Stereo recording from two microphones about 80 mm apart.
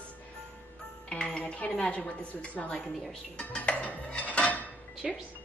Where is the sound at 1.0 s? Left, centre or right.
Centre.